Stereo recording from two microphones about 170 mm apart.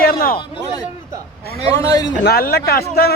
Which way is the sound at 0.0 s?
60° left (ahead or behind).